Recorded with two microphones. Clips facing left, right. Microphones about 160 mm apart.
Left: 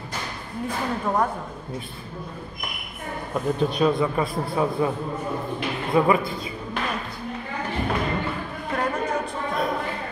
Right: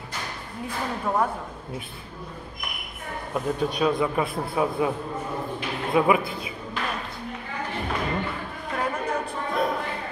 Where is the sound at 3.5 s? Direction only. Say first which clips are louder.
Left 3 dB; centre (ahead or behind).